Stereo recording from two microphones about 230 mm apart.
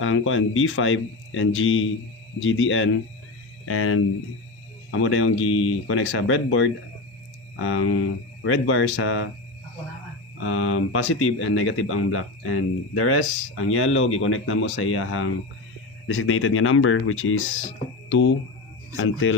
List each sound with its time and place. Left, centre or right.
0.0 s speech: left
10.4 s speech: left